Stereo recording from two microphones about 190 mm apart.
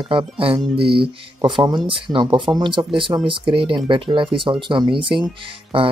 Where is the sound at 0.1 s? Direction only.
30° right (ahead or behind).